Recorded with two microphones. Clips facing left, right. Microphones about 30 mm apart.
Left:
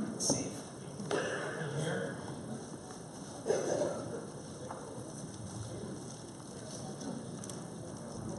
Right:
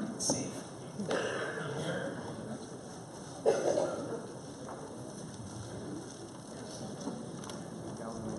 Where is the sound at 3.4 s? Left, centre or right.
Right.